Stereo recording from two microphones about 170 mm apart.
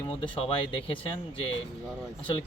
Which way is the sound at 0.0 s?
30° left (ahead or behind).